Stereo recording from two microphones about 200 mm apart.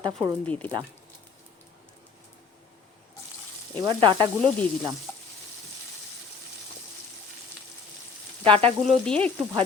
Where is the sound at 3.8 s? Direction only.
25° right (ahead or behind).